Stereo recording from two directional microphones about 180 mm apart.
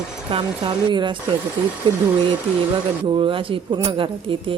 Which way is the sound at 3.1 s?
30° right (ahead or behind).